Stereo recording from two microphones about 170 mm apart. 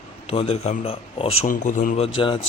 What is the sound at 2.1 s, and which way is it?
Speech, 30° left (ahead or behind).